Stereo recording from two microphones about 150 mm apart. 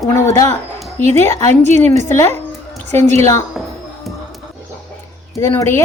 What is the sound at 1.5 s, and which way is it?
Speech, 50° right (ahead or behind).